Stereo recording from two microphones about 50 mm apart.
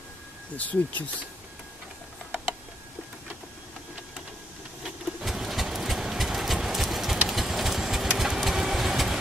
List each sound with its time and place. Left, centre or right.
0.6 s speech: left
4.8 s a sound: centre
7.2 s engine: centre
8.4 s vehicle: centre